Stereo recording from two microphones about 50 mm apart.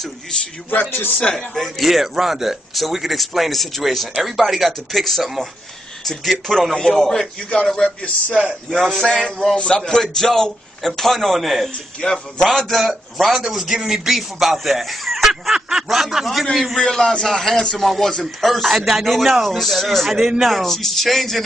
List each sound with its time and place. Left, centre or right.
0.7 s a man's voice: left
1.2 s speech: centre
1.5 s a man's voice: centre
8.6 s a man's voice: centre
12.0 s speech: centre
12.8 s a man's voice: centre